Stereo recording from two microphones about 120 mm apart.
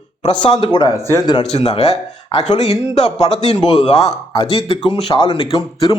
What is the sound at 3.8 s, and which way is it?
Speech, 65° left (ahead or behind).